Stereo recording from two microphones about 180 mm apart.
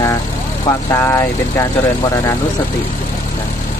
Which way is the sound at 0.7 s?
15° left (ahead or behind).